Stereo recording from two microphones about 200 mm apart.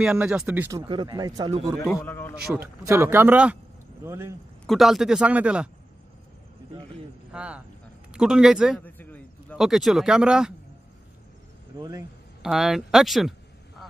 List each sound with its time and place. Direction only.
0.0 s speech: 5° right (ahead or behind); by 1.6 s 20° right (ahead or behind)
2.0 s a man's voice: 10° left (ahead or behind)
2.4 s speech: 5° right (ahead or behind)
4.6 s speech: centre (ahead or behind)
7.3 s speech: 5° right (ahead or behind)
8.8 s a sound: 10° left (ahead or behind)
11.7 s speech: 20° right (ahead or behind)
12.4 s speech: centre (ahead or behind)